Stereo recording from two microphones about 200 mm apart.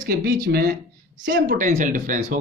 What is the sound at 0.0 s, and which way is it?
Speech, 50° right (ahead or behind).